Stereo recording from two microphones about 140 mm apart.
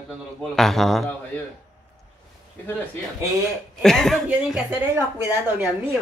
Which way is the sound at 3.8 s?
5° left (ahead or behind).